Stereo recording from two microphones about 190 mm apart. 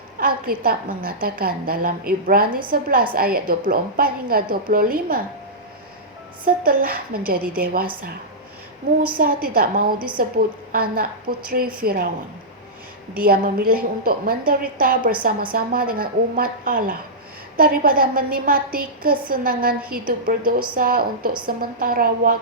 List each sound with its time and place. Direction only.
0.2 s a woman's voice: 50° right (ahead or behind)
6.4 s a woman's voice: 50° right (ahead or behind)
9.1 s a woman's voice: 50° right (ahead or behind)
13.1 s a woman's voice: 50° right (ahead or behind)